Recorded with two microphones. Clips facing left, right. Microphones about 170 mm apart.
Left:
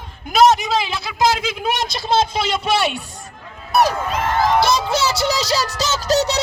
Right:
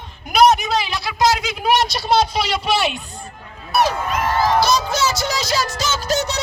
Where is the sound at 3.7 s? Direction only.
40° left (ahead or behind).